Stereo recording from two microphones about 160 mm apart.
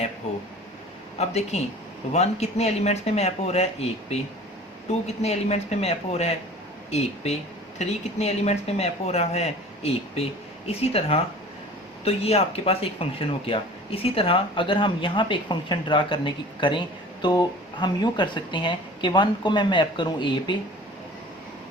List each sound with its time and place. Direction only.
1.2 s speech: 40° left (ahead or behind)
7.8 s speech: 45° left (ahead or behind)